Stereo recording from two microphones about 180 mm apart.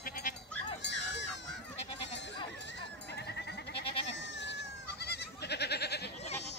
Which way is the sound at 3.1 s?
70° left (ahead or behind).